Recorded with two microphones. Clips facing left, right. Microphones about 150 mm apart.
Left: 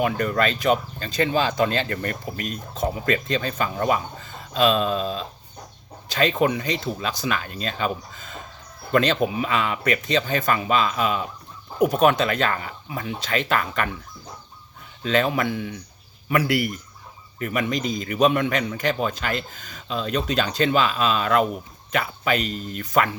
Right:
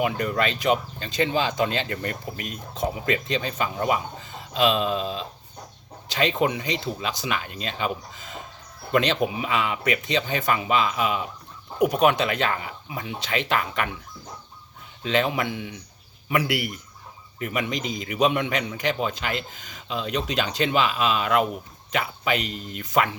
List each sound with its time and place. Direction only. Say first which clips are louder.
0.0 s speech: left 2 dB; 20° right (ahead or behind)
15.0 s speech: left 2 dB; 20° right (ahead or behind)